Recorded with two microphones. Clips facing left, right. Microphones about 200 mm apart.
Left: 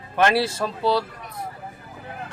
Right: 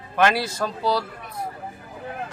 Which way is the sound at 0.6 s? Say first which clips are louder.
Left 2 dB; centre (ahead or behind).